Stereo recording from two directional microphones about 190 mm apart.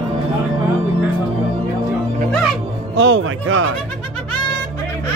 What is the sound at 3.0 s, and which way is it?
Music, 90° right.